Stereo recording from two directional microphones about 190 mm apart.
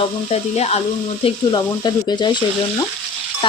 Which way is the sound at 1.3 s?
25° left (ahead or behind).